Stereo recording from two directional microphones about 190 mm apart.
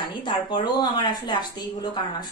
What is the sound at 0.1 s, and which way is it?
A woman's voice, 25° left (ahead or behind).